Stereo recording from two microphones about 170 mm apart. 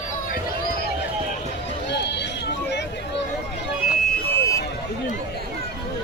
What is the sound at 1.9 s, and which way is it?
Run, 85° left.